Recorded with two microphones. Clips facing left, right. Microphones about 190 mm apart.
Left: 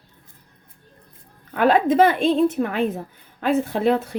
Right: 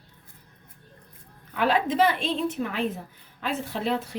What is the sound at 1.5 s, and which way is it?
A woman's voice, 50° left (ahead or behind).